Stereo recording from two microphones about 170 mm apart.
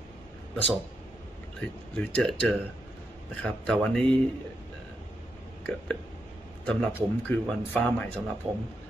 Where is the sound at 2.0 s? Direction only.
5° left (ahead or behind).